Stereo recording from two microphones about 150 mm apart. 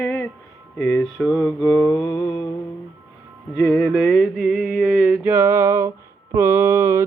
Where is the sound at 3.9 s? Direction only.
5° right (ahead or behind).